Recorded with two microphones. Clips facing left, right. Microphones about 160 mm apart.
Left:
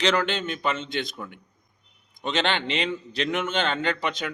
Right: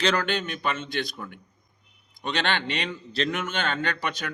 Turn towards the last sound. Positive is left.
turn(degrees=20)  # may be behind; listen again after turning